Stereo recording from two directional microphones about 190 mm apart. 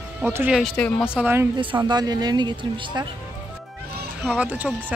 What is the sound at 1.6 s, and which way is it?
Speech, 25° right (ahead or behind).